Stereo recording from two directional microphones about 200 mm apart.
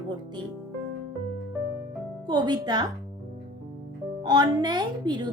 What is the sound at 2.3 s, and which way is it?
Speech, 20° right (ahead or behind).